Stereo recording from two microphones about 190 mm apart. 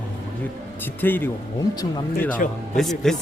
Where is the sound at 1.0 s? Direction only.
10° left (ahead or behind).